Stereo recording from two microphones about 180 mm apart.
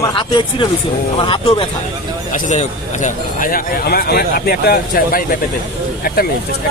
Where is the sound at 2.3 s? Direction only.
45° left (ahead or behind).